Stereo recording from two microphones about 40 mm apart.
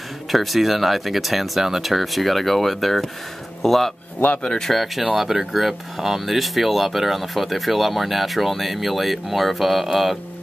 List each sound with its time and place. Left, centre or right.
0.3 s speech: centre
4.4 s speech: centre
4.6 s speech: centre